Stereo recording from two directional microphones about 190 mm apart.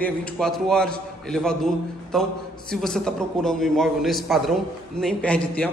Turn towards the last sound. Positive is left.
turn(degrees=5)  # may be behind; listen again after turning